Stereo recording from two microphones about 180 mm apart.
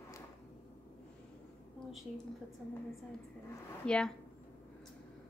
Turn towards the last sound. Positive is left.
turn(degrees=5)  # may be behind; listen again after turning